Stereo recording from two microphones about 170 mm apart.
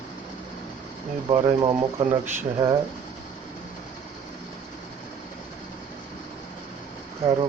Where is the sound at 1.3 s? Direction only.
30° right (ahead or behind).